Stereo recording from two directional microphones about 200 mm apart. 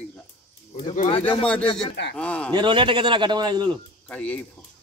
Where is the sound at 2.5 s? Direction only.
25° right (ahead or behind).